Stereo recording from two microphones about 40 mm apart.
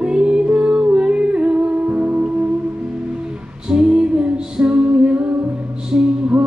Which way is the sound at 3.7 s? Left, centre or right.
Right.